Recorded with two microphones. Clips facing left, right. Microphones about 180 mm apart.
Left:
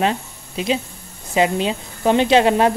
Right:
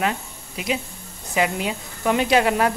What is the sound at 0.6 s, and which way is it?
Speech, 30° left (ahead or behind).